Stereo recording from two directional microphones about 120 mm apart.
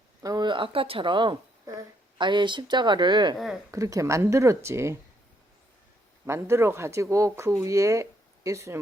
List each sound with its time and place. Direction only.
0.2 s speech: 35° right (ahead or behind)
3.3 s speech: centre (ahead or behind)
3.7 s speech: 25° right (ahead or behind)
6.2 s speech: 20° right (ahead or behind)